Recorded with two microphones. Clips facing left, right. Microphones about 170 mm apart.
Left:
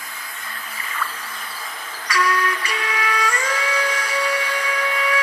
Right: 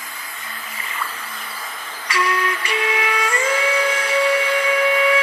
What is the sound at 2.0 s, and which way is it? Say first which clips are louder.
Music: even; 25° right (ahead or behind).